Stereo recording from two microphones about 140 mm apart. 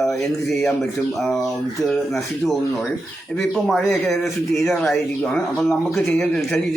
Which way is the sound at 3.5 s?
Centre (ahead or behind).